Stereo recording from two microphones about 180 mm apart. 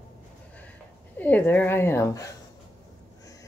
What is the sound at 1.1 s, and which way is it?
Speech, 10° left (ahead or behind).